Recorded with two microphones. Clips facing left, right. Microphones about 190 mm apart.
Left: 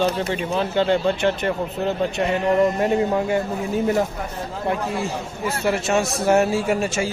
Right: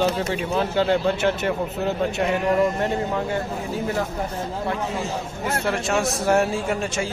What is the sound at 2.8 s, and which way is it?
Speech, 15° left (ahead or behind).